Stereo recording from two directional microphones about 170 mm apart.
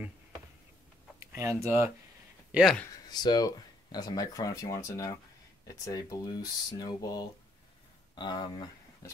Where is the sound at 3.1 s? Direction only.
25° left (ahead or behind).